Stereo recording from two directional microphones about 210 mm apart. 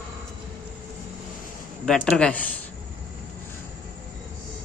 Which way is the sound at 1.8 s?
5° left (ahead or behind).